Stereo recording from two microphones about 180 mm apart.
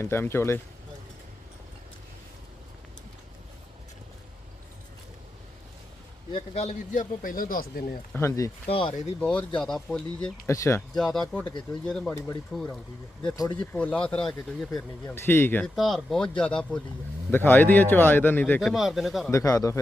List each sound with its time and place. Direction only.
0.0 s speech: 15° left (ahead or behind)
6.3 s speech: 35° left (ahead or behind); by 7.9 s 55° left (ahead or behind)
8.1 s speech: 15° left (ahead or behind)
10.4 s speech: 15° left (ahead or behind)
10.9 s speech: centre (ahead or behind)
13.3 s speech: 20° left (ahead or behind)
13.7 s speech: 5° left (ahead or behind)
15.1 s speech: 15° left (ahead or behind)
19.3 s speech: 15° left (ahead or behind)